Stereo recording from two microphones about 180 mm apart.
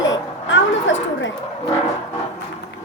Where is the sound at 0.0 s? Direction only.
90° left.